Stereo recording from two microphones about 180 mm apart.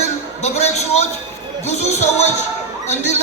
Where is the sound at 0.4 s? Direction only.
35° left (ahead or behind).